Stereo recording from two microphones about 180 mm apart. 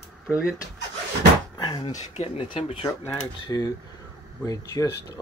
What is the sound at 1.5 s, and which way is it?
Door, 25° left (ahead or behind).